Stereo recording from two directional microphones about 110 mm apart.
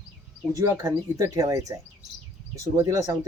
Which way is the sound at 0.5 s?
30° right (ahead or behind).